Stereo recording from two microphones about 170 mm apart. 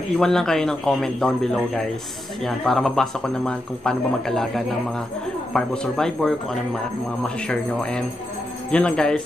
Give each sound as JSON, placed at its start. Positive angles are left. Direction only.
{"t": 0.2, "sound": "speech", "side_deg": 5}